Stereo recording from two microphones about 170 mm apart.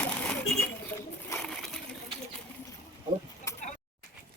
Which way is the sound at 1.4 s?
5° left (ahead or behind).